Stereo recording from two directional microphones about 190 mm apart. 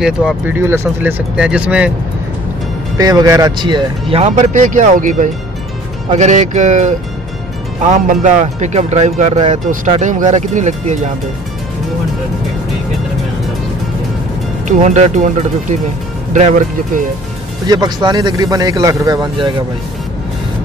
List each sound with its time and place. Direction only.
0.0 s speech: 5° right (ahead or behind)
0.6 s speech: 15° right (ahead or behind)
3.0 s speech: 20° right (ahead or behind); by 6.9 s 40° right (ahead or behind)
7.9 s speech: 40° right (ahead or behind)
14.8 s speech: 35° right (ahead or behind)
17.6 s speech: 20° right (ahead or behind)